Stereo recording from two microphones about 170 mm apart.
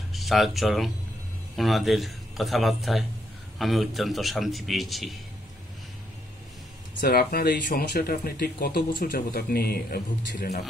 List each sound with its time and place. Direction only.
0.1 s a man's voice: centre (ahead or behind)
6.9 s speech: 55° left (ahead or behind)